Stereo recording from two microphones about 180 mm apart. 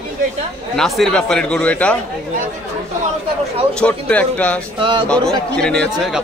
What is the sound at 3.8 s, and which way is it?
Speech, 5° left (ahead or behind).